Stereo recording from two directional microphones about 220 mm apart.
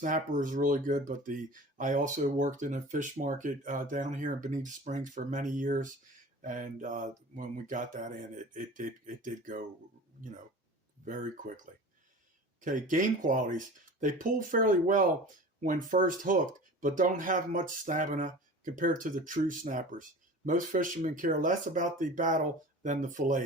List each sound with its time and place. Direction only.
0.0 s speech: 35° right (ahead or behind)
11.0 s speech: 35° right (ahead or behind)